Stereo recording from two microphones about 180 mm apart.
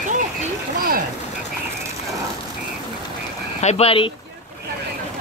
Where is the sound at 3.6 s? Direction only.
35° left (ahead or behind).